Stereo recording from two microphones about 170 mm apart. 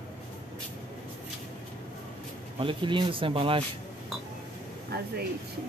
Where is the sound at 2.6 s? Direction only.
30° right (ahead or behind).